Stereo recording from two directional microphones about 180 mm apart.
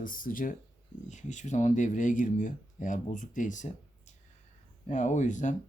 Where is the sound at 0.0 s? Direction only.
50° left (ahead or behind).